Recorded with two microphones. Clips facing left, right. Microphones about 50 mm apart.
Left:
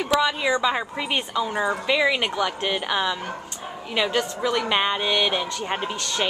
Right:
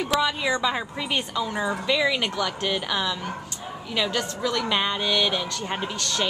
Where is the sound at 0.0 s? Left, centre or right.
Centre.